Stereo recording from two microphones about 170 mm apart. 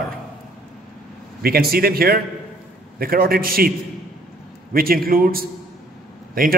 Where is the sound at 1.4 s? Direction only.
65° right (ahead or behind).